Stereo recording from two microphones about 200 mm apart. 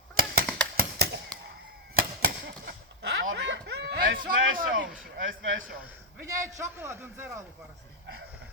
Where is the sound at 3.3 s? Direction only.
65° right (ahead or behind).